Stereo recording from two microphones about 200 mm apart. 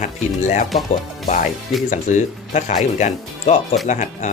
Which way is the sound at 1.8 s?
40° left (ahead or behind).